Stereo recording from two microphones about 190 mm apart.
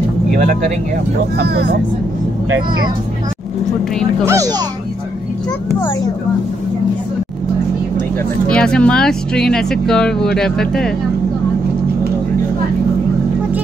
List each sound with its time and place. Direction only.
1.4 s speech: 55° right (ahead or behind)
4.3 s speech: 20° right (ahead or behind)
8.5 s speech: 5° left (ahead or behind)